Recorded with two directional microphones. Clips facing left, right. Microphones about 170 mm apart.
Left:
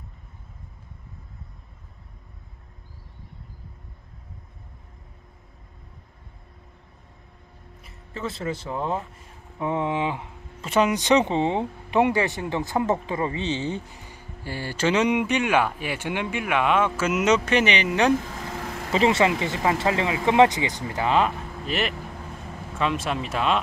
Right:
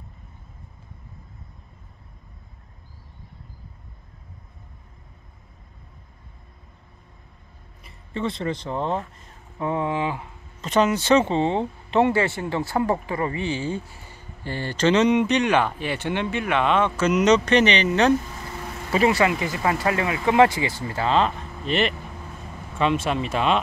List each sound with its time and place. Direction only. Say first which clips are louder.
7.8 s speech: right 5 dB; centre (ahead or behind)
18.9 s speech: right 1 dB; 20° left (ahead or behind); by 23.6 s centre (ahead or behind)